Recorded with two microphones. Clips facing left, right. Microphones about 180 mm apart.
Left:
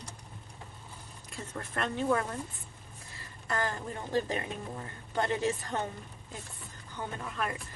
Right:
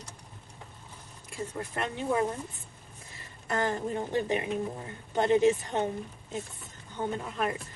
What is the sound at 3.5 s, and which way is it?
Speech, 20° right (ahead or behind).